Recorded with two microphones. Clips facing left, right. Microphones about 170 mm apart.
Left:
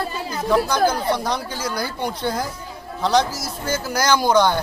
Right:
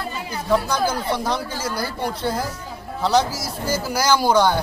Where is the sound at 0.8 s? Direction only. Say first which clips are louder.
Left 2 dB; 5° right (ahead or behind).